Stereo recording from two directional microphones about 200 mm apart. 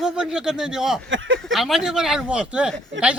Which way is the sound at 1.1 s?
70° right (ahead or behind).